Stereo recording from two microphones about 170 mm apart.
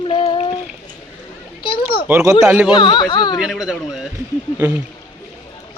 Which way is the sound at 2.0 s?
15° right (ahead or behind).